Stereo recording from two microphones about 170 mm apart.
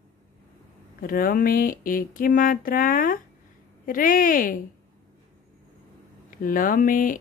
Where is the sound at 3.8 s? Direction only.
55° left (ahead or behind).